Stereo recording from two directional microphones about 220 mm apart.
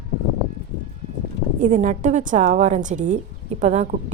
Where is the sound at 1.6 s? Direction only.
35° right (ahead or behind).